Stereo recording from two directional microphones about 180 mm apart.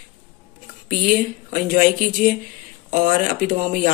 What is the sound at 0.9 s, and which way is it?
A woman's voice, 50° right (ahead or behind).